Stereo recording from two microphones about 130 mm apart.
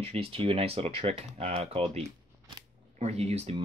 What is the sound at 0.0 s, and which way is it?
Speech, 50° right (ahead or behind).